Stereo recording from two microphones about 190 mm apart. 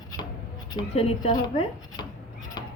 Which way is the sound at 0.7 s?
30° left (ahead or behind).